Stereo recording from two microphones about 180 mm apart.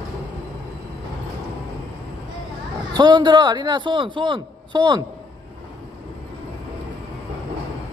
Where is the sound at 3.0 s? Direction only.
25° right (ahead or behind).